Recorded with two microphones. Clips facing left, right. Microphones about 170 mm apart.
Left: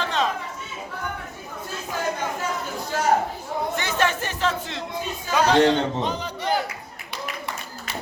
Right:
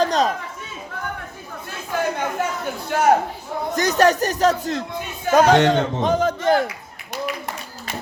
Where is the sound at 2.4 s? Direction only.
60° right (ahead or behind).